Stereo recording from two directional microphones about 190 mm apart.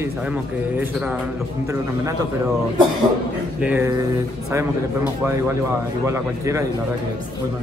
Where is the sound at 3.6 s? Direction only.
10° right (ahead or behind).